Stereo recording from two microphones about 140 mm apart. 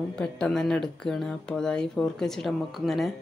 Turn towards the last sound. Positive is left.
turn(degrees=0)  # may be behind; listen again after turning